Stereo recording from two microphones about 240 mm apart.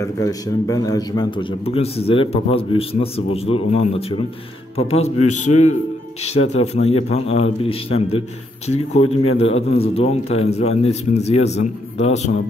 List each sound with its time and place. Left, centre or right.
0.0 s a man's voice: centre
6.2 s a man's voice: left